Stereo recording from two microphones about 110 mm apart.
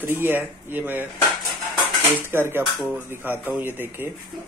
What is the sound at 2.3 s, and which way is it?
Speech, 20° right (ahead or behind).